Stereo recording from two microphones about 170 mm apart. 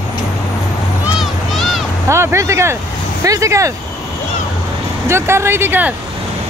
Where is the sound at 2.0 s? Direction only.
15° right (ahead or behind).